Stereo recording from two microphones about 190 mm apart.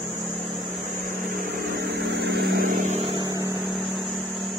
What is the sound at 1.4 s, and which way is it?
Vehicle, 55° right (ahead or behind).